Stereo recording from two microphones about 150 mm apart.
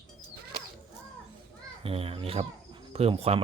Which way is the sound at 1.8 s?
40° right (ahead or behind).